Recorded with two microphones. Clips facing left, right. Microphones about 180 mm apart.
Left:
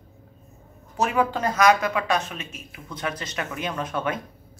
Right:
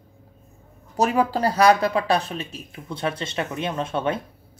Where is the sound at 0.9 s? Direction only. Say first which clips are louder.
Right 2 dB; 35° right (ahead or behind).